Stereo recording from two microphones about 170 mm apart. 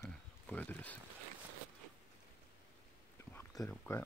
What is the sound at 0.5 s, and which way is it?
Speech, 10° left (ahead or behind).